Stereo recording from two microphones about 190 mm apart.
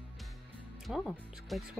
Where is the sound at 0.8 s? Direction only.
Centre (ahead or behind).